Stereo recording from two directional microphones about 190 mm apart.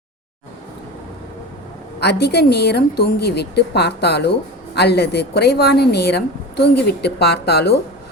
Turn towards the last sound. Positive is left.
turn(degrees=60)  # may be behind; listen again after turning